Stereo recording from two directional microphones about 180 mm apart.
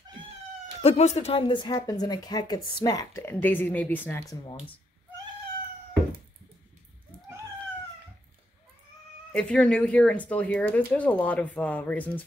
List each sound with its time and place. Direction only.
0.8 s speech: 35° left (ahead or behind); by 4.6 s 20° left (ahead or behind)
9.3 s speech: 5° left (ahead or behind)